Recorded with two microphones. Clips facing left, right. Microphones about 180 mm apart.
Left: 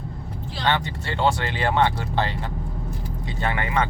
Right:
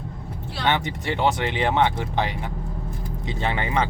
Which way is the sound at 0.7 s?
15° right (ahead or behind).